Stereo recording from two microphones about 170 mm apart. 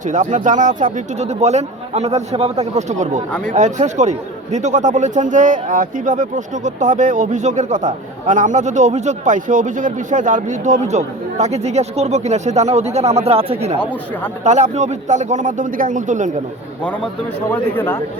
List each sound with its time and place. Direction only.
0.0 s speech: 45° right (ahead or behind)
17.5 s speech: 10° left (ahead or behind)